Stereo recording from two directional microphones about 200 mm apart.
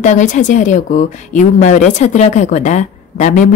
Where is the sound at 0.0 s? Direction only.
35° left (ahead or behind).